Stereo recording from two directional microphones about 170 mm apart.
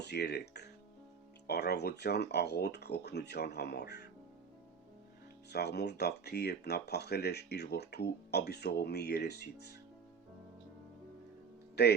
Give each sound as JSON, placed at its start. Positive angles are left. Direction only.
{"t": 0.1, "sound": "speech", "side_deg": 70}
{"t": 5.5, "sound": "speech", "side_deg": 70}
{"t": 11.8, "sound": "speech", "side_deg": 75}